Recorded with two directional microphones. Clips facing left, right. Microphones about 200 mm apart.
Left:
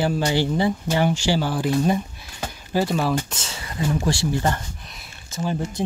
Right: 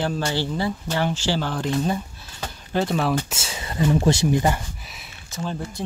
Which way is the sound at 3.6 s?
25° right (ahead or behind).